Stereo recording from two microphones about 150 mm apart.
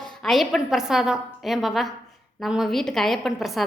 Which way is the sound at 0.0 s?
Centre (ahead or behind).